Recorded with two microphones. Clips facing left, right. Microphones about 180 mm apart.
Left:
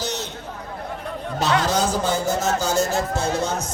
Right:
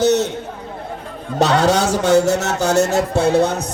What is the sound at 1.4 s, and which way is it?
Speech, 70° right (ahead or behind).